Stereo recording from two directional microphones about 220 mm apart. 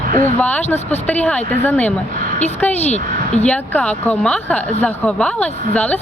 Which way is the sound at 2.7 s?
30° left (ahead or behind).